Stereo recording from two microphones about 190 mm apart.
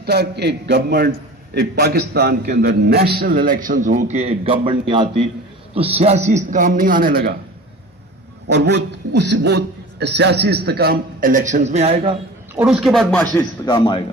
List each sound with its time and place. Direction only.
0.0 s a man's voice: 60° right (ahead or behind)
8.4 s a man's voice: 65° right (ahead or behind); by 12.1 s 35° right (ahead or behind)
12.5 s a man's voice: centre (ahead or behind)
13.3 s a man's voice: 20° left (ahead or behind)